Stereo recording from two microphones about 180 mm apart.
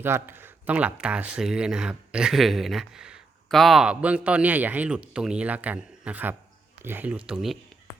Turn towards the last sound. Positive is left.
turn(degrees=0)  # may be behind; listen again after turning